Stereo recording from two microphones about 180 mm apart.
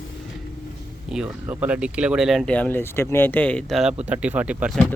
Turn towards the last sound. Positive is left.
turn(degrees=-5)  # may be behind; listen again after turning